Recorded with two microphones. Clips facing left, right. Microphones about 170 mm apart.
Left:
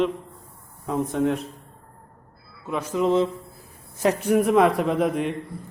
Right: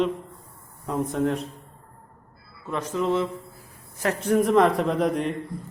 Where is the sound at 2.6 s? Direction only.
10° left (ahead or behind).